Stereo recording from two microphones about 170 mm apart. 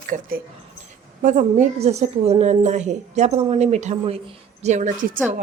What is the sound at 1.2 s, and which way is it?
A woman's voice, 45° right (ahead or behind).